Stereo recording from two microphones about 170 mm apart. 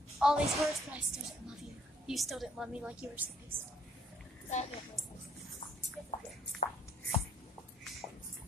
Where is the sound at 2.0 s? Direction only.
Centre (ahead or behind).